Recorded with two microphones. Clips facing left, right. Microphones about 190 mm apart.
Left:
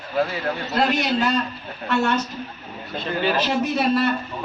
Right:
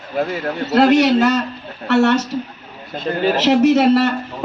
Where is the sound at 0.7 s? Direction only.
80° right.